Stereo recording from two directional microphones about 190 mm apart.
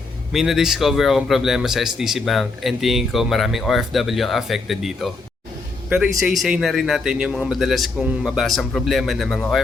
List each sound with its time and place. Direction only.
0.3 s speech: centre (ahead or behind)